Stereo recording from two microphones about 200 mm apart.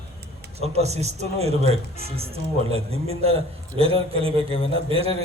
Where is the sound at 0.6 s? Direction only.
30° right (ahead or behind).